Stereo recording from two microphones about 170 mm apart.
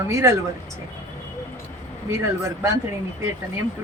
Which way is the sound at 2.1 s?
15° right (ahead or behind).